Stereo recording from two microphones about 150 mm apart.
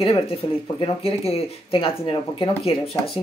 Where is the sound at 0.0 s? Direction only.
40° left (ahead or behind).